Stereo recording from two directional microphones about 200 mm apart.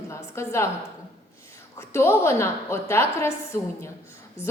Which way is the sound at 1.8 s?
10° left (ahead or behind).